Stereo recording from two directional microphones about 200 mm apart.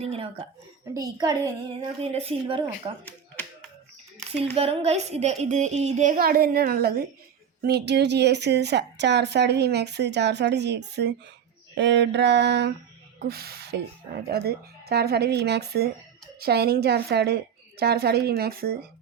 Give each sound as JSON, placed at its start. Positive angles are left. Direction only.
{"t": 0.0, "sound": "a child's voice", "side_deg": -30}
{"t": 3.0, "sound": "a sound", "side_deg": 10}
{"t": 4.3, "sound": "a woman's voice", "side_deg": -30}